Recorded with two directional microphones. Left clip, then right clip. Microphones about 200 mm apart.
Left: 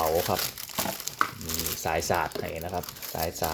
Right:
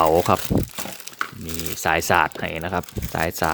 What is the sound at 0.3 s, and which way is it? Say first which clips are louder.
Speech: right 8 dB; 50° right (ahead or behind).